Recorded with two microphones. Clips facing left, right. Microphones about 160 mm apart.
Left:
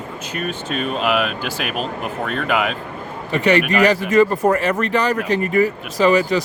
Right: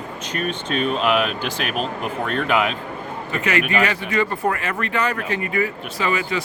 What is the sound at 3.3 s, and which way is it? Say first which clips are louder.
Speech: left 5 dB; 35° left (ahead or behind).